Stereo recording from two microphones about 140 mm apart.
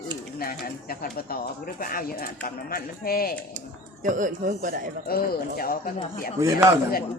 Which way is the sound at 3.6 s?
65° right (ahead or behind).